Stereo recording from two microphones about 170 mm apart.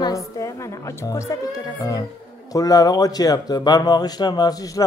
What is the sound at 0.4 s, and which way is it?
Speech, 20° left (ahead or behind).